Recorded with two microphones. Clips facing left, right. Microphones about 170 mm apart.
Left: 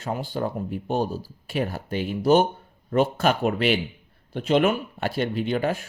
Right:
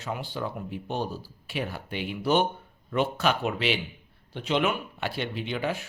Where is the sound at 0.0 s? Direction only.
45° left (ahead or behind).